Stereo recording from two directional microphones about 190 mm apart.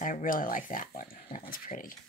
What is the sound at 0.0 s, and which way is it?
Speech, 45° left (ahead or behind).